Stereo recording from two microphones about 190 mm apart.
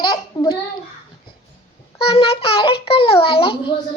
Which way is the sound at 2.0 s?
30° left (ahead or behind).